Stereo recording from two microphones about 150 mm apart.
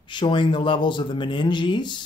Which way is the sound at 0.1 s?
30° left (ahead or behind).